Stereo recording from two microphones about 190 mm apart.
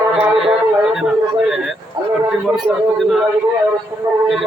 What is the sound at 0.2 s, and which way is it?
Music, centre (ahead or behind).